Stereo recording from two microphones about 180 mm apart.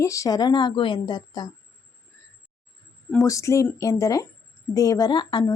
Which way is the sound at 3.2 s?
15° left (ahead or behind).